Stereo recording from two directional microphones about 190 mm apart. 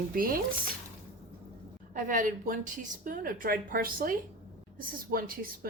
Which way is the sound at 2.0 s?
45° right (ahead or behind).